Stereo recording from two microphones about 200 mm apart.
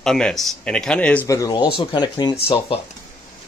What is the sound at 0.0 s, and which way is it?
Speech, 5° left (ahead or behind).